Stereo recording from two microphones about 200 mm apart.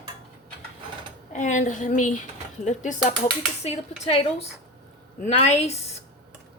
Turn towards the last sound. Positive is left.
turn(degrees=30)  # may be behind; listen again after turning